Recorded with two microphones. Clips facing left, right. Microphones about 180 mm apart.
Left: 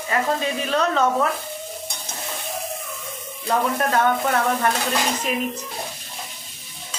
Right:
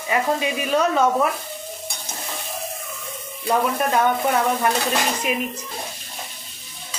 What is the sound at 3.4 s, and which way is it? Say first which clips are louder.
Speech: right 1 dB; 10° right (ahead or behind).